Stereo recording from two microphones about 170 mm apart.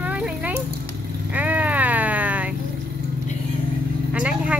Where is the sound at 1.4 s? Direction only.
10° right (ahead or behind).